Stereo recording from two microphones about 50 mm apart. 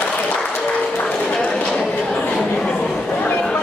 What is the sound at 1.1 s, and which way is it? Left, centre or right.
Clip-clop, centre.